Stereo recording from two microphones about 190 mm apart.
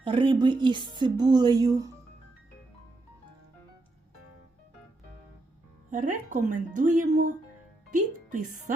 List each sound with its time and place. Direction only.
0.0 s speech: 25° right (ahead or behind)
5.9 s speech: 45° right (ahead or behind)